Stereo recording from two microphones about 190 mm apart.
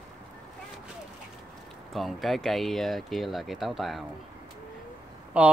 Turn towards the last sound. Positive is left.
turn(degrees=-5)  # may be behind; listen again after turning